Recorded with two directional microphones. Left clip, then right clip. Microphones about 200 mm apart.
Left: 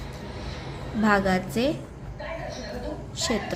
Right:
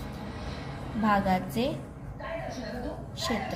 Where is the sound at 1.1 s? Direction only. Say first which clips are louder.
Left 3 dB; 35° left (ahead or behind).